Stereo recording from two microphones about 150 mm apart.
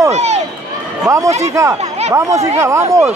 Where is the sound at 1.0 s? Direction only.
20° right (ahead or behind).